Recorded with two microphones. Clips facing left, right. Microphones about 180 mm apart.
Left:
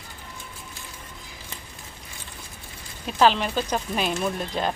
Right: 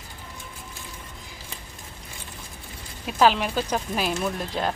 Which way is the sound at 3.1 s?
5° right (ahead or behind).